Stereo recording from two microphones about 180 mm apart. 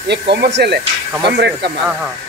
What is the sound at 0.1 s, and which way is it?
Speech, 70° right (ahead or behind).